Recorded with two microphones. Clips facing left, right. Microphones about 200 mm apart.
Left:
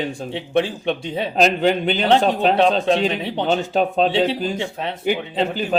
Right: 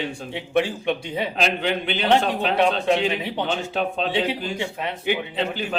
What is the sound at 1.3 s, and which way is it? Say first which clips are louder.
Speech: left 8 dB; 40° left (ahead or behind).